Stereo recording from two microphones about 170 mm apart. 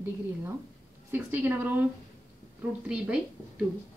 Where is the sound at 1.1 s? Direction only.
10° right (ahead or behind).